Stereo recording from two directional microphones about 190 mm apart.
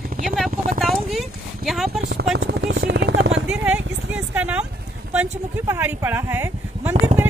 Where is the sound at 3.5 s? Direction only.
5° right (ahead or behind).